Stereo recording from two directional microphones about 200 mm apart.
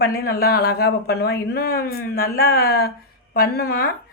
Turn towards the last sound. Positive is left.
turn(degrees=50)  # may be behind; listen again after turning